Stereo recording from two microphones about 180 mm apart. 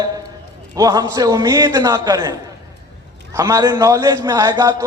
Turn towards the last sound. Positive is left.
turn(degrees=-20)  # may be behind; listen again after turning